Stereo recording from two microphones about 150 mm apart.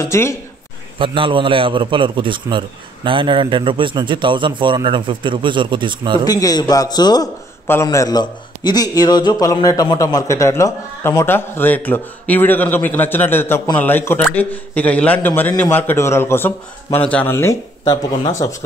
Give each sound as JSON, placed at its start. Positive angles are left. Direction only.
{"t": 0.0, "sound": "a man's voice", "side_deg": 20}
{"t": 0.9, "sound": "a man's voice", "side_deg": -35}
{"t": 6.2, "sound": "a man's voice", "side_deg": 25}